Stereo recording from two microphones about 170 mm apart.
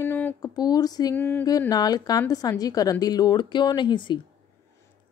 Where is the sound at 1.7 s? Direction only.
20° left (ahead or behind).